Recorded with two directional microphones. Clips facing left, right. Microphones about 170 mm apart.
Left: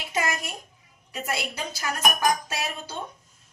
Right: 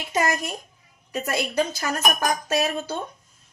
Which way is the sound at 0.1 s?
40° right (ahead or behind).